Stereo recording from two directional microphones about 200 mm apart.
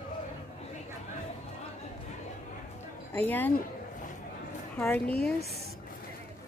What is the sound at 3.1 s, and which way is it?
Speech, 10° left (ahead or behind).